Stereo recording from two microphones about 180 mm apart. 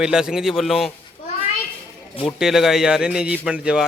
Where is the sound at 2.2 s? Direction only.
Centre (ahead or behind).